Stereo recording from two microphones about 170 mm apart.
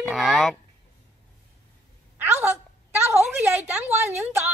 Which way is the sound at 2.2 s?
10° right (ahead or behind).